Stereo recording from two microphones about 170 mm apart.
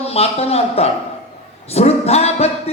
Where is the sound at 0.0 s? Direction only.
35° left (ahead or behind).